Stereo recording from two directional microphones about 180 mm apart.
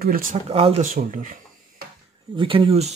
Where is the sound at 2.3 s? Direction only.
25° right (ahead or behind).